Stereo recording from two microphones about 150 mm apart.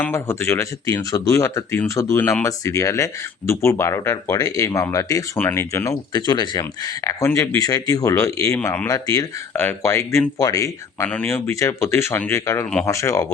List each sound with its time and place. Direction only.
0.0 s speech: 15° left (ahead or behind)
8.9 s speech: 20° left (ahead or behind)